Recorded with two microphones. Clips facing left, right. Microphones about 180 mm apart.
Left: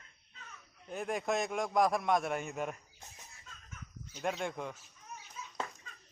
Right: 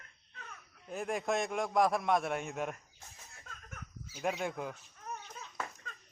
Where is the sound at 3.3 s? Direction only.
55° right (ahead or behind).